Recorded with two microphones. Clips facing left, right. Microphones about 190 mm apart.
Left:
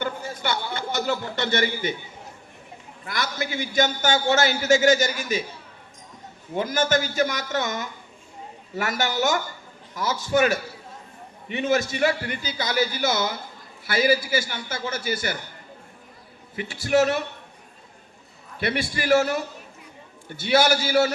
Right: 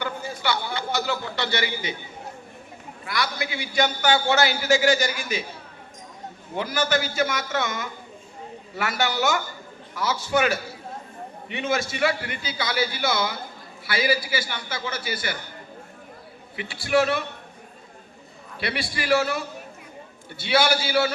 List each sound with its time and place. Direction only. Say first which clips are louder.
0.0 s a man's voice: even; 50° left (ahead or behind)
3.1 s a man's voice: even; 45° left (ahead or behind)
6.6 s a man's voice: left 2 dB; 45° left (ahead or behind)
16.6 s a man's voice: left 1 dB; 45° left (ahead or behind)
18.6 s a man's voice: left 3 dB; 45° left (ahead or behind)